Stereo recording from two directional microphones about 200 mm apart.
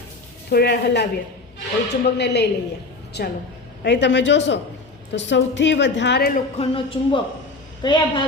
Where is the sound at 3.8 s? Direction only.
60° left (ahead or behind).